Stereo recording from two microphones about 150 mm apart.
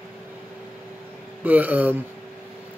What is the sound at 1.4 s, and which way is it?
Speech, 10° right (ahead or behind).